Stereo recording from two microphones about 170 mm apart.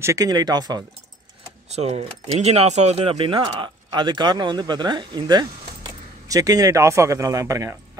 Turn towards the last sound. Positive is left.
turn(degrees=-15)  # may be behind; listen again after turning